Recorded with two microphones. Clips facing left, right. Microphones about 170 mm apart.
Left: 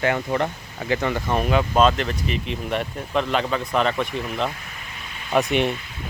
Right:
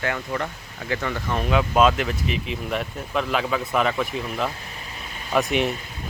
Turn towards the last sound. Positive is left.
turn(degrees=0)  # may be behind; listen again after turning